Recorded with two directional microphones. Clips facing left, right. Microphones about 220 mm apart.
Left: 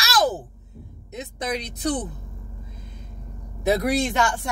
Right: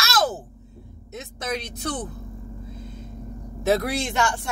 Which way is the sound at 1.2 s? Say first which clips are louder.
Left 2 dB; 15° left (ahead or behind).